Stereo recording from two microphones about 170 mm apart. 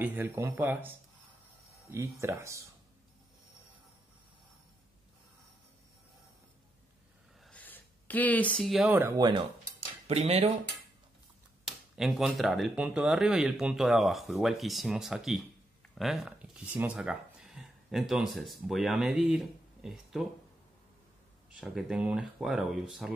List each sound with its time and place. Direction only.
0.0 s speech: 10° right (ahead or behind)
7.4 s speech: 10° left (ahead or behind); by 9.2 s 10° right (ahead or behind)
9.2 s speech: 30° right (ahead or behind)
9.8 s cutlery: 35° right (ahead or behind)
11.6 s speech: centre (ahead or behind)
21.5 s speech: 5° right (ahead or behind)